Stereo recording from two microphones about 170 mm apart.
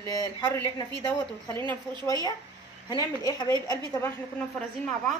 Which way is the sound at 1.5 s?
25° right (ahead or behind).